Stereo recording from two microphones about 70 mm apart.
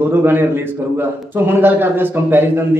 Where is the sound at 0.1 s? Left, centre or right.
Right.